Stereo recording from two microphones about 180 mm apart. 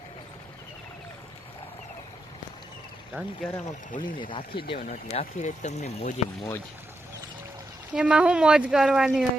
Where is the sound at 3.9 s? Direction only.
30° left (ahead or behind).